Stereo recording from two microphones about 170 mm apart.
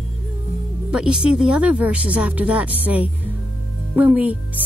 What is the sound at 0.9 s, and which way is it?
Speech, 5° right (ahead or behind).